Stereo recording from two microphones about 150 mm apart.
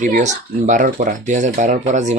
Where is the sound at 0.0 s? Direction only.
55° right (ahead or behind).